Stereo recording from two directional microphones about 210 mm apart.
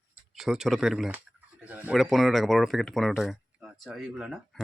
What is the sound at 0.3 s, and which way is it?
Speech, centre (ahead or behind).